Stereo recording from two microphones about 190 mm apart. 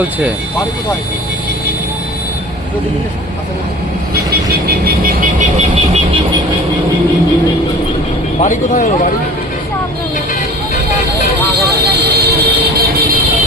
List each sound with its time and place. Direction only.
4.6 s vehicle: 55° right (ahead or behind)
8.4 s speech: 40° left (ahead or behind)
11.8 s vehicle: 60° right (ahead or behind)